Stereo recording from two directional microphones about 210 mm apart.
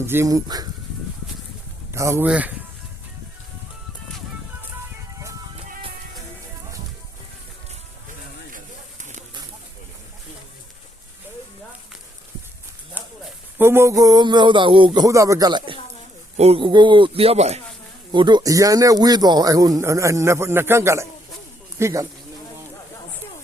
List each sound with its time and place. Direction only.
0.0 s speech: 10° right (ahead or behind)
1.9 s speech: 15° right (ahead or behind)
8.5 s a sound: 35° right (ahead or behind)
12.9 s speech: 10° right (ahead or behind)